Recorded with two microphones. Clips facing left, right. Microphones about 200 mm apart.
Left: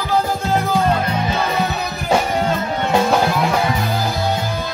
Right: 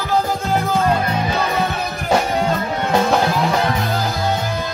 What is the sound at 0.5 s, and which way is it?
Music, centre (ahead or behind).